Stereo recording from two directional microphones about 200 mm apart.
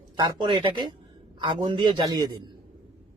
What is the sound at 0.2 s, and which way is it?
Speech, 25° right (ahead or behind).